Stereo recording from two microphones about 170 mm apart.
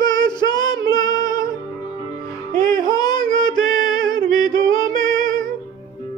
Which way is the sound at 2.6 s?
20° left (ahead or behind).